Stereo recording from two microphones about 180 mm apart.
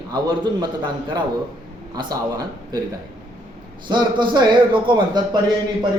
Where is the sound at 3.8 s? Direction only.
25° right (ahead or behind).